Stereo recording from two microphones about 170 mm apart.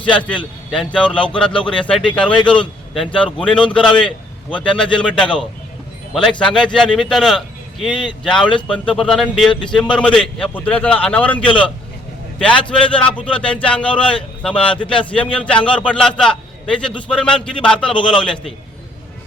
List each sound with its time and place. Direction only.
0.7 s speech: 5° left (ahead or behind)
2.4 s a man's voice: 30° left (ahead or behind)
3.2 s a man's voice: 5° left (ahead or behind)